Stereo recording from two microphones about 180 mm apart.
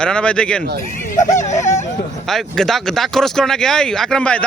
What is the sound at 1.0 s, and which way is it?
Speech, 45° left (ahead or behind).